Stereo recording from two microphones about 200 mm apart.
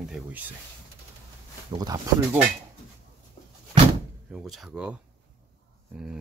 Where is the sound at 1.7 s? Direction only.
20° right (ahead or behind).